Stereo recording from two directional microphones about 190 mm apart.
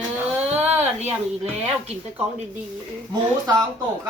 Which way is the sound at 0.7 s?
35° right (ahead or behind).